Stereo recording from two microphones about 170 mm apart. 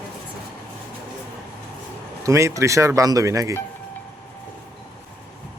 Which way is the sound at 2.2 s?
20° right (ahead or behind).